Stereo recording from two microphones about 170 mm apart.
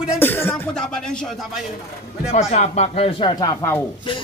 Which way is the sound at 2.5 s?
40° left (ahead or behind).